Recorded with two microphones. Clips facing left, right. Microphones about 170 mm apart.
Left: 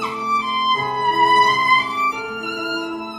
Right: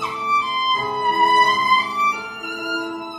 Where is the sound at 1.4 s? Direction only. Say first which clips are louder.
Left 1 dB; centre (ahead or behind).